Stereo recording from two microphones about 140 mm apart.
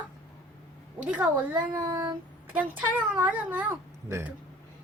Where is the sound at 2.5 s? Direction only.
10° right (ahead or behind).